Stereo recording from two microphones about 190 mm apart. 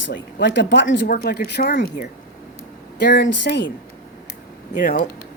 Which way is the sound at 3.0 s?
65° left (ahead or behind).